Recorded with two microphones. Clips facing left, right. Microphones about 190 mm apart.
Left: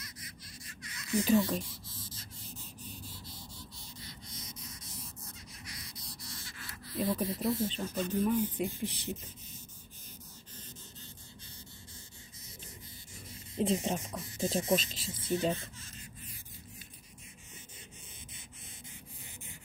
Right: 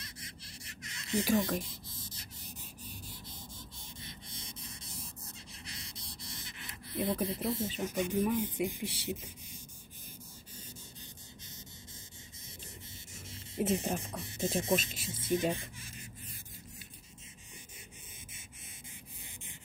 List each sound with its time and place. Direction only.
0.0 s a sound: 30° right (ahead or behind)
1.2 s writing: 20° right (ahead or behind)
3.3 s a sound: 20° right (ahead or behind)
7.2 s speech: 25° right (ahead or behind)
7.6 s speech: 10° right (ahead or behind)
13.6 s speech: 30° left (ahead or behind)
14.0 s speech: 30° right (ahead or behind)